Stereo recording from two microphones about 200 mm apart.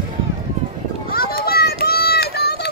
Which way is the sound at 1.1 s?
50° left (ahead or behind).